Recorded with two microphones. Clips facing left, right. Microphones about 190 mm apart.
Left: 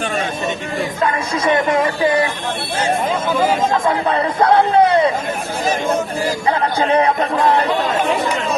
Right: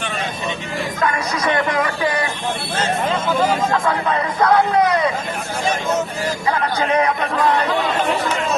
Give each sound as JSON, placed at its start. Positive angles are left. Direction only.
{"t": 1.0, "sound": "speech", "side_deg": 25}
{"t": 2.7, "sound": "speech", "side_deg": 10}
{"t": 3.8, "sound": "speech", "side_deg": 30}
{"t": 6.5, "sound": "speech", "side_deg": 30}